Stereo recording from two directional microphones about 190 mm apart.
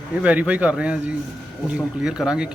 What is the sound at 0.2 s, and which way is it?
A man's voice, 5° right (ahead or behind).